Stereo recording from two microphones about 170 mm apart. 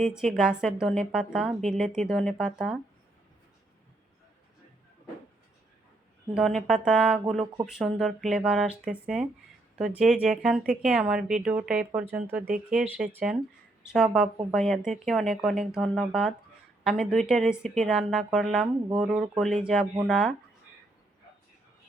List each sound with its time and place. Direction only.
0.0 s a woman's voice: 5° right (ahead or behind)
6.3 s a woman's voice: centre (ahead or behind)